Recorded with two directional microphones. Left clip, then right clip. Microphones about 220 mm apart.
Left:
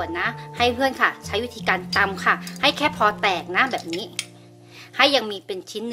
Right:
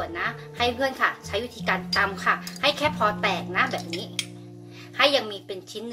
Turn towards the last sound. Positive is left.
turn(degrees=50)  # may be behind; listen again after turning